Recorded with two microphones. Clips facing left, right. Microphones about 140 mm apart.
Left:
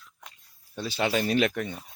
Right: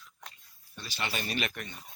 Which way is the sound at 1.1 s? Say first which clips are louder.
Left 11 dB; 90° left.